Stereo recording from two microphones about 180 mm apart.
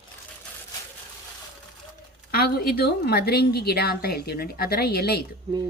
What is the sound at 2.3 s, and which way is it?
Speech, 60° left (ahead or behind).